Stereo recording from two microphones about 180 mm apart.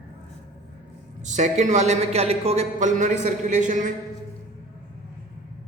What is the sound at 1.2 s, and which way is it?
A man's voice, 40° right (ahead or behind).